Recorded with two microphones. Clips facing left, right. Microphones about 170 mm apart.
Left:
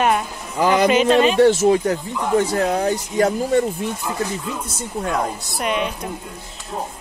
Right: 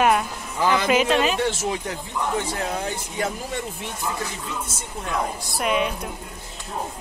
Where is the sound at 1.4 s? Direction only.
45° left (ahead or behind).